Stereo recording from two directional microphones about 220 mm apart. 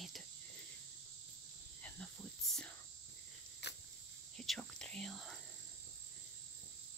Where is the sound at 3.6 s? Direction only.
50° left (ahead or behind).